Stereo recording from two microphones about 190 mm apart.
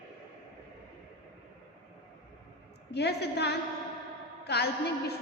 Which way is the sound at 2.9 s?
60° left (ahead or behind).